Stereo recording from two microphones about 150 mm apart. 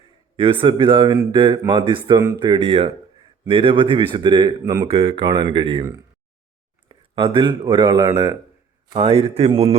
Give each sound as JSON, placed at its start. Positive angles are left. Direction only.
{"t": 0.3, "sound": "speech", "side_deg": -35}
{"t": 5.8, "sound": "speech", "side_deg": -20}